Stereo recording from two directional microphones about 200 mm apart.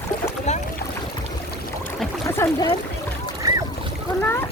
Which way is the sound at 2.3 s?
15° left (ahead or behind).